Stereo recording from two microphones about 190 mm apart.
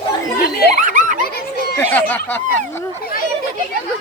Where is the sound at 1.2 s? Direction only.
55° left (ahead or behind).